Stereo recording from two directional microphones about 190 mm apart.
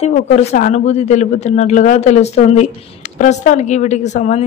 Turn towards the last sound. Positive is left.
turn(degrees=35)  # may be behind; listen again after turning